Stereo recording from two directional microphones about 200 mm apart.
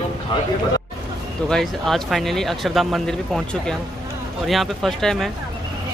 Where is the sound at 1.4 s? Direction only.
Centre (ahead or behind).